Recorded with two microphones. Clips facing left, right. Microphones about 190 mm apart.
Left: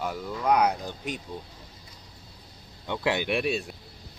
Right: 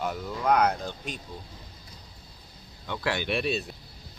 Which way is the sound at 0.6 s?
10° left (ahead or behind).